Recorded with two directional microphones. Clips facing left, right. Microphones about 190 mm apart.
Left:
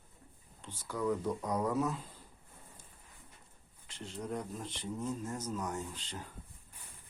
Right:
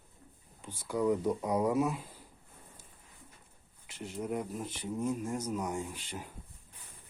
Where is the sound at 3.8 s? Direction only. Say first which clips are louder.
Right 4 dB; 10° right (ahead or behind).